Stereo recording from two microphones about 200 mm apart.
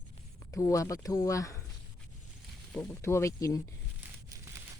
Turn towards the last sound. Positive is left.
turn(degrees=-15)  # may be behind; listen again after turning